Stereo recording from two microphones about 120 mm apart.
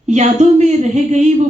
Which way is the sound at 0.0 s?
70° right (ahead or behind).